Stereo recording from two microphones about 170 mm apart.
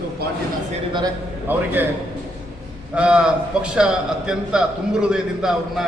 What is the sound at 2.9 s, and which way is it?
A man's voice, 5° right (ahead or behind).